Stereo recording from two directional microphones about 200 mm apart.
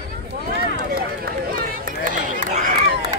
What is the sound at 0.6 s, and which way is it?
Run, 50° right (ahead or behind).